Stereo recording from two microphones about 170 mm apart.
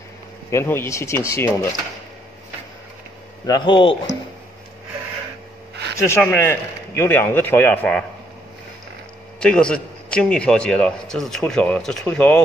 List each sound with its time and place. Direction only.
0.5 s speech: 15° left (ahead or behind)
3.4 s speech: 25° left (ahead or behind)
5.9 s speech: 15° left (ahead or behind)
9.4 s a man's voice: 5° left (ahead or behind)